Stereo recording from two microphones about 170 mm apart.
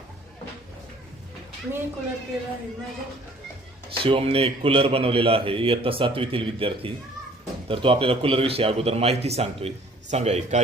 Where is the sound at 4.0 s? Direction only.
35° right (ahead or behind).